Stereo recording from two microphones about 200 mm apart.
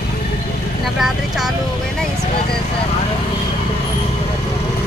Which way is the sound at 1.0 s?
Centre (ahead or behind).